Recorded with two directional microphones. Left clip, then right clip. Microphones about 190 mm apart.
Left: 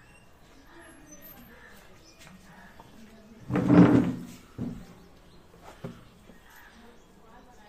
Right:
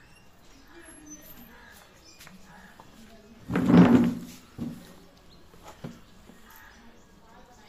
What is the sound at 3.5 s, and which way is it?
Drawer open or close, 60° right (ahead or behind).